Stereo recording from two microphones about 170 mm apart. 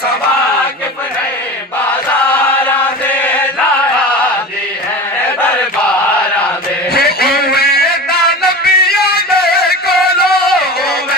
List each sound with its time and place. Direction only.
2.5 s chant: 10° left (ahead or behind)
6.9 s music: 65° left (ahead or behind)